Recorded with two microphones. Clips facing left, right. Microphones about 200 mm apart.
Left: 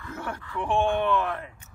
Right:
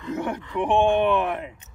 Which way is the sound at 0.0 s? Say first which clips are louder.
Right 8 dB; 20° right (ahead or behind).